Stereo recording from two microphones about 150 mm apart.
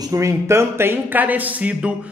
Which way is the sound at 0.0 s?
20° right (ahead or behind).